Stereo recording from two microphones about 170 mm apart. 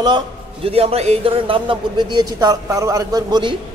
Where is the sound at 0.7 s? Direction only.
35° right (ahead or behind).